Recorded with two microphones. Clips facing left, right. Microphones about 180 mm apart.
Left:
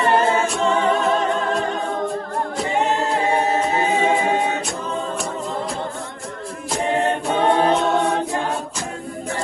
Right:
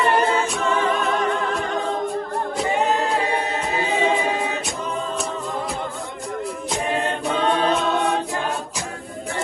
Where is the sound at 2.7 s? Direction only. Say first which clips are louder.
Left 2 dB; 20° left (ahead or behind).